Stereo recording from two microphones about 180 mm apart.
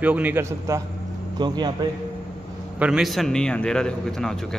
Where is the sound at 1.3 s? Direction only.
25° right (ahead or behind).